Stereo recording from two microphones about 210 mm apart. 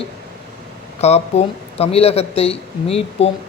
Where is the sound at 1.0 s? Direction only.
30° left (ahead or behind).